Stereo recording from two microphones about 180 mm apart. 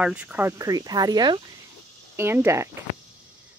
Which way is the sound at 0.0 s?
10° right (ahead or behind).